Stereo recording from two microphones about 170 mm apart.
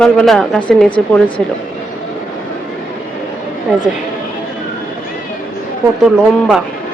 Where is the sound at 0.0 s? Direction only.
5° left (ahead or behind).